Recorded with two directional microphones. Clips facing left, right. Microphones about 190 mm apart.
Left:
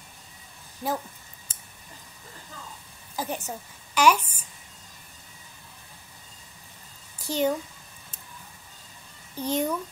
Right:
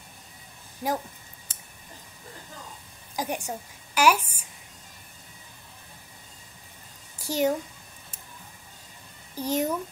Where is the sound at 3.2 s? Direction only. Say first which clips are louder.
Right 1 dB; 10° right (ahead or behind).